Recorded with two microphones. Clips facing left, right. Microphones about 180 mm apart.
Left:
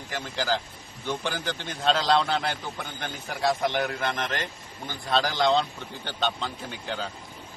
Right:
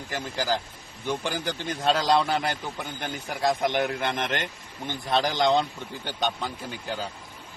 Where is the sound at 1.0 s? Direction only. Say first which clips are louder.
Right 1 dB; 15° right (ahead or behind).